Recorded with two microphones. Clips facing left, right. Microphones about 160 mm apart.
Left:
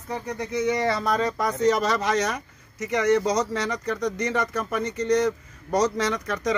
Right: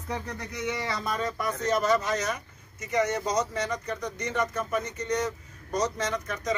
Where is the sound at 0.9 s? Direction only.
65° left (ahead or behind).